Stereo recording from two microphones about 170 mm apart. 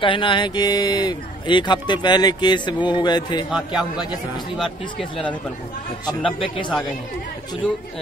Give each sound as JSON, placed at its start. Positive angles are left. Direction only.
{"t": 0.0, "sound": "a man's voice", "side_deg": 30}
{"t": 3.4, "sound": "speech", "side_deg": -5}
{"t": 6.0, "sound": "a man's voice", "side_deg": 30}